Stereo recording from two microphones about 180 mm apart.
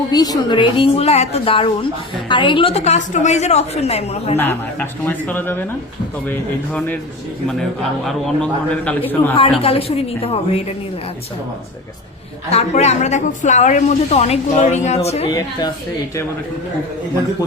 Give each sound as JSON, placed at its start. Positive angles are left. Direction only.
{"t": 0.1, "sound": "a woman's voice", "side_deg": 20}
{"t": 4.4, "sound": "a man's voice", "side_deg": 10}
{"t": 6.7, "sound": "a man's voice", "side_deg": 10}
{"t": 9.3, "sound": "a woman's voice", "side_deg": 30}
{"t": 12.5, "sound": "a woman's voice", "side_deg": 35}
{"t": 15.3, "sound": "speech", "side_deg": 20}